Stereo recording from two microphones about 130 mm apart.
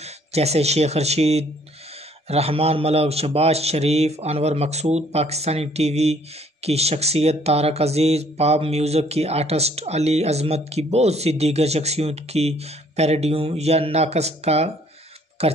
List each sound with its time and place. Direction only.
0.0 s speech: 55° right (ahead or behind)